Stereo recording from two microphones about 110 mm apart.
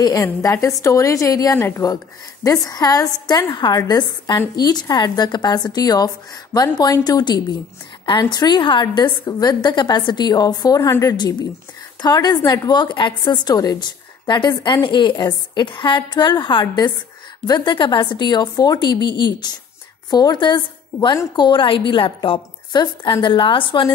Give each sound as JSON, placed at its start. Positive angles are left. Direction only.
{"t": 0.2, "sound": "a woman's voice", "side_deg": 25}